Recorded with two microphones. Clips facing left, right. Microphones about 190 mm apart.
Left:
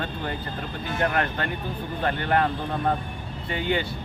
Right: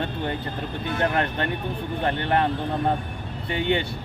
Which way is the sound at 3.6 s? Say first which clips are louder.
Right 2 dB; 25° right (ahead or behind).